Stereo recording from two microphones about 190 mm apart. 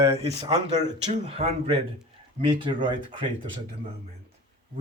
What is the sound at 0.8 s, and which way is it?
Speech, 35° right (ahead or behind).